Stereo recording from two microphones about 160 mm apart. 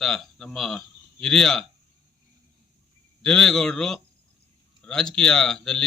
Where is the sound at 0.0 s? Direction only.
Centre (ahead or behind).